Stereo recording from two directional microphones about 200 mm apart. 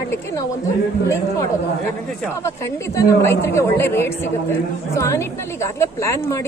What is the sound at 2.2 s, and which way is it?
Speech, 15° left (ahead or behind).